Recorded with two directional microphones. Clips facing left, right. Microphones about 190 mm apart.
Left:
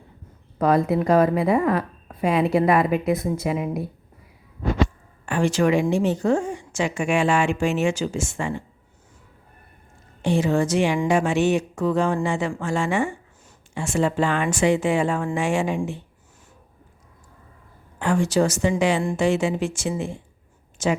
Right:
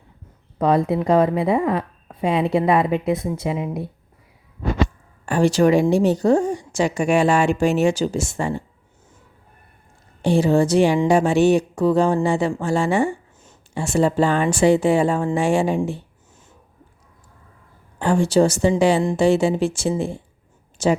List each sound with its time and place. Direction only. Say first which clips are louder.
0.6 s a woman's voice: right 1 dB; 30° right (ahead or behind)
5.2 s a woman's voice: right 4 dB; 35° right (ahead or behind)
10.2 s a woman's voice: right 4 dB; 35° right (ahead or behind)
18.0 s a woman's voice: right 4 dB; 30° right (ahead or behind)